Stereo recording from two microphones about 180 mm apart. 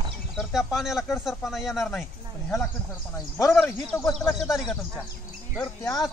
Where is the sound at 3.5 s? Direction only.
5° left (ahead or behind).